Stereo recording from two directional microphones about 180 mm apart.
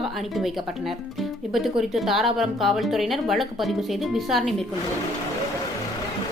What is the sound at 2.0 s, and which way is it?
A woman's voice, centre (ahead or behind).